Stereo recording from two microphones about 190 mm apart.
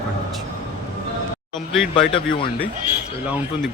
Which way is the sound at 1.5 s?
Centre (ahead or behind).